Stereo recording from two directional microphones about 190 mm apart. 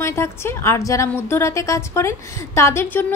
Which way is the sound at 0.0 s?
15° left (ahead or behind).